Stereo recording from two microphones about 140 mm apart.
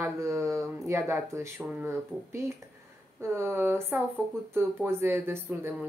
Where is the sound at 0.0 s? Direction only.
20° right (ahead or behind).